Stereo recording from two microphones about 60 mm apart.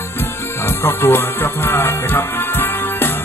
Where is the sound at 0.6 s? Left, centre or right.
Left.